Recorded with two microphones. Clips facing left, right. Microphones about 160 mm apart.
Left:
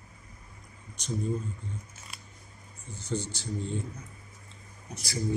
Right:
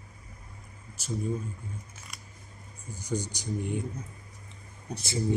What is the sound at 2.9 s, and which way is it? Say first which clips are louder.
Speech: right 1 dB; 10° right (ahead or behind).